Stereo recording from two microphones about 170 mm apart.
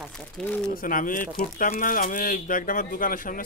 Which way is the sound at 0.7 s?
55° left (ahead or behind).